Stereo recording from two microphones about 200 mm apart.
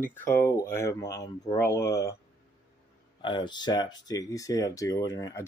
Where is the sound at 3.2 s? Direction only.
25° left (ahead or behind).